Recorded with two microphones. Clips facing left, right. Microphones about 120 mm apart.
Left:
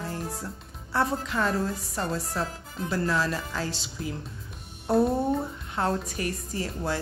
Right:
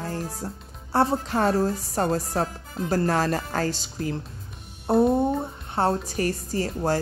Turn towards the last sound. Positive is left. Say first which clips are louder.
# right 5 dB
turn(degrees=-40)  # may be behind; listen again after turning